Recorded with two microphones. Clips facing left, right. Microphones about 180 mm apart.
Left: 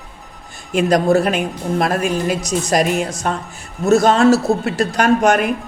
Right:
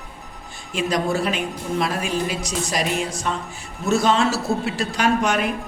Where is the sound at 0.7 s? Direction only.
50° left (ahead or behind).